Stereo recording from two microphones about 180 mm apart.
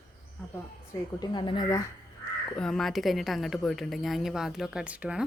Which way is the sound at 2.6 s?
Centre (ahead or behind).